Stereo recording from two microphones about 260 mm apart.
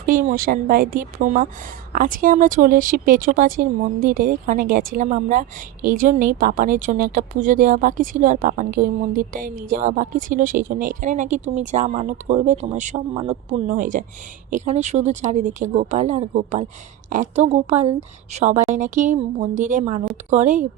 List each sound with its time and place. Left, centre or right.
0.0 s speech: right